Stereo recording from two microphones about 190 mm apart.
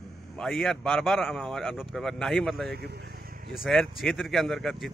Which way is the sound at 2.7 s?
60° right (ahead or behind).